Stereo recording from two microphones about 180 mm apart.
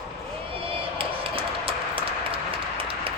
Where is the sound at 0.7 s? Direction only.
30° right (ahead or behind).